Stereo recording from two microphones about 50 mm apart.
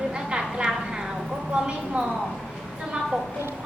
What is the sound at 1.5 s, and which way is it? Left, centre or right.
Speech, right.